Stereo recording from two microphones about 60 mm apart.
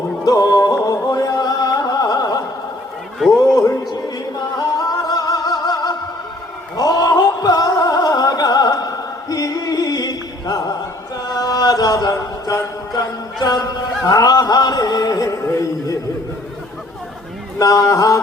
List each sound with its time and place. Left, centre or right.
0.3 s music: left
0.9 s music: left
4.5 s music: left
12.1 s music: left
13.5 s a sound: left
17.6 s mantra: left